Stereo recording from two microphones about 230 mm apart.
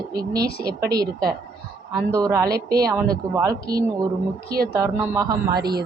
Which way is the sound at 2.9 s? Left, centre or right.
Centre.